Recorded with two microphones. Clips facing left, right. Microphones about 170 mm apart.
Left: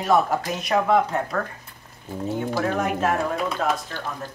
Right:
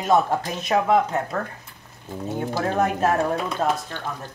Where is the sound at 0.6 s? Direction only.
25° right (ahead or behind).